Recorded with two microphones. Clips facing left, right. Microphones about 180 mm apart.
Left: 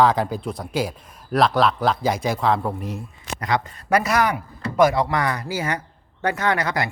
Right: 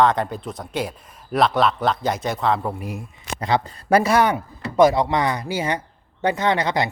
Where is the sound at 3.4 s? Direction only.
30° right (ahead or behind).